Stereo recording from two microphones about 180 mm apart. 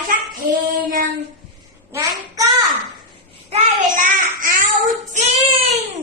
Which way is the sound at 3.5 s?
45° right (ahead or behind).